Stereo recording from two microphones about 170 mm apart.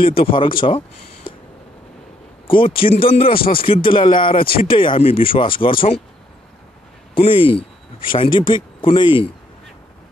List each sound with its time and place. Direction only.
0.0 s speech: 35° left (ahead or behind)
2.4 s a man's voice: 30° left (ahead or behind)
7.2 s speech: 30° left (ahead or behind)